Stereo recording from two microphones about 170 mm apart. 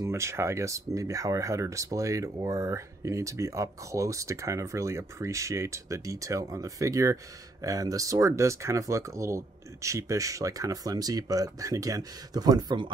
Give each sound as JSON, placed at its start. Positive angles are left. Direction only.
{"t": 0.0, "sound": "speech", "side_deg": -15}